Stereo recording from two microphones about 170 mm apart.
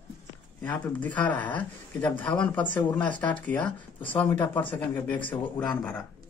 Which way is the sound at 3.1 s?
10° left (ahead or behind).